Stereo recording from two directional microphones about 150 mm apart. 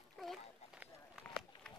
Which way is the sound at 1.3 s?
5° left (ahead or behind).